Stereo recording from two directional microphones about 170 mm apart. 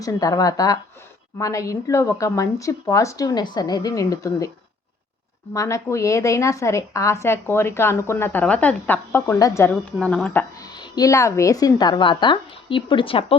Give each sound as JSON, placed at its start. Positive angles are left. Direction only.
{"t": 0.0, "sound": "speech", "side_deg": 20}
{"t": 5.5, "sound": "speech", "side_deg": 15}
{"t": 10.6, "sound": "speech", "side_deg": 25}